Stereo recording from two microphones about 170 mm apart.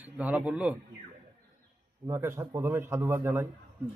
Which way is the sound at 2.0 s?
15° right (ahead or behind).